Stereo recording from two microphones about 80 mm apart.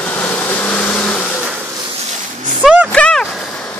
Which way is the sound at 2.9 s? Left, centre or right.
Centre.